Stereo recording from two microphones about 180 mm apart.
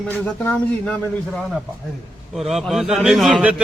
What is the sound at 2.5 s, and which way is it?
A man's voice, centre (ahead or behind).